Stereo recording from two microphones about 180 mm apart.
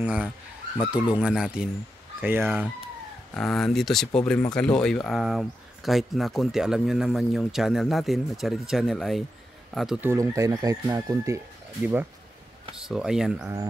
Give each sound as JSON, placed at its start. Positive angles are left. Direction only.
{"t": 0.0, "sound": "speech", "side_deg": -10}
{"t": 3.3, "sound": "speech", "side_deg": 0}